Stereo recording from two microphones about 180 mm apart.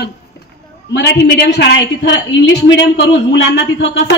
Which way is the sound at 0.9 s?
75° left (ahead or behind).